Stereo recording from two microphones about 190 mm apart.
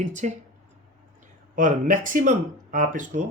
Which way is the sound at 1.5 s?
45° right (ahead or behind).